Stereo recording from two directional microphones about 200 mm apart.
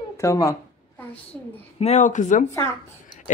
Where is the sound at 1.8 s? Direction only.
35° left (ahead or behind).